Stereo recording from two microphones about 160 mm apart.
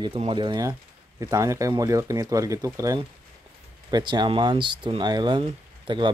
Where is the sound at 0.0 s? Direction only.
35° right (ahead or behind).